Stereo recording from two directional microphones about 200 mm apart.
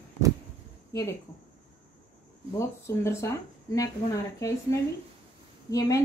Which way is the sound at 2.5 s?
15° left (ahead or behind).